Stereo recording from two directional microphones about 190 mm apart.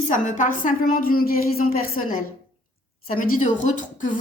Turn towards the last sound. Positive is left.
turn(degrees=40)  # may be behind; listen again after turning